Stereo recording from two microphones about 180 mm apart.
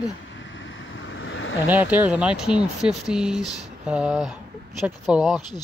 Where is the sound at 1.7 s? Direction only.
10° right (ahead or behind).